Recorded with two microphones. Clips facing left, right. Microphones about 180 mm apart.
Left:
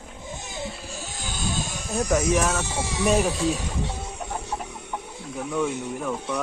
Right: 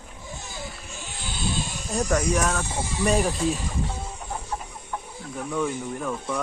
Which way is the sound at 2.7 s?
75° left (ahead or behind).